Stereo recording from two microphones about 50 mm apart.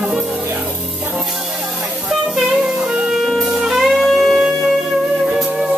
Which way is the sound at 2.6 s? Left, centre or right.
Centre.